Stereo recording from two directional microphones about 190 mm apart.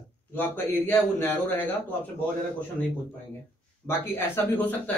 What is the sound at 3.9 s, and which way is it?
Speech, 10° left (ahead or behind).